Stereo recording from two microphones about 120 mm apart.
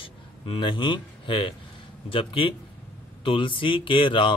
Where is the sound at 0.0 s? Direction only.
45° left (ahead or behind).